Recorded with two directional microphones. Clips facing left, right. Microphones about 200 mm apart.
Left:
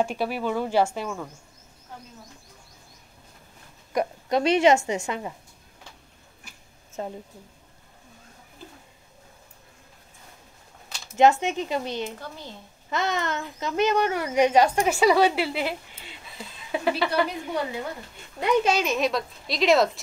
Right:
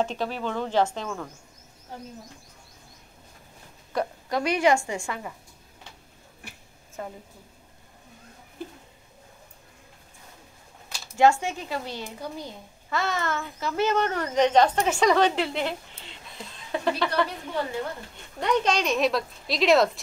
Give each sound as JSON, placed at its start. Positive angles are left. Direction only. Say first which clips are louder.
{"t": 0.0, "sound": "a child's voice", "louder": "left 2 dB", "side_deg": 10}
{"t": 3.9, "sound": "a woman's voice", "louder": "left 3 dB", "side_deg": 20}
{"t": 7.0, "sound": "a woman's voice", "louder": "left 3 dB", "side_deg": 25}
{"t": 11.1, "sound": "a woman's voice", "louder": "left 2 dB", "side_deg": 20}
{"t": 12.2, "sound": "speech", "louder": "right 4 dB", "side_deg": -15}
{"t": 12.9, "sound": "a child's voice", "louder": "left 1 dB", "side_deg": 20}